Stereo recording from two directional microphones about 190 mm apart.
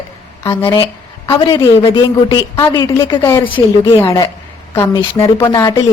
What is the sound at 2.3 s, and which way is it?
A woman's voice, 20° left (ahead or behind).